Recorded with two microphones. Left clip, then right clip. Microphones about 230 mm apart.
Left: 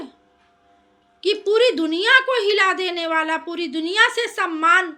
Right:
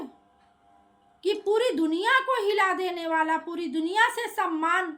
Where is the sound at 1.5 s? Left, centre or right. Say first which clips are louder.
Left 7 dB; centre.